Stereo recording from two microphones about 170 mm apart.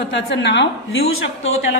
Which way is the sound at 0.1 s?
90° left.